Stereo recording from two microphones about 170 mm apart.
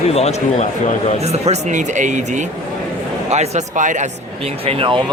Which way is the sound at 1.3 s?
45° right (ahead or behind).